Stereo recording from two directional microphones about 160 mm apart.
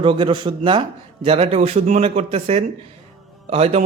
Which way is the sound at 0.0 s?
35° right (ahead or behind).